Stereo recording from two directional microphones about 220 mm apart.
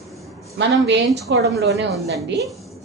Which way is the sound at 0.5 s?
55° right (ahead or behind).